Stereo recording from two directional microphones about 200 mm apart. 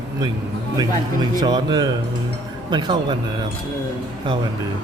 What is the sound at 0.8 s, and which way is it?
Speech, 20° right (ahead or behind).